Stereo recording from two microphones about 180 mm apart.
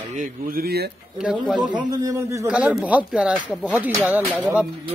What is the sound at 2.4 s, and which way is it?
Speech, 5° right (ahead or behind).